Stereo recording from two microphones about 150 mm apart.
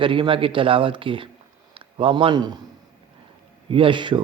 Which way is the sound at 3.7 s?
35° right (ahead or behind).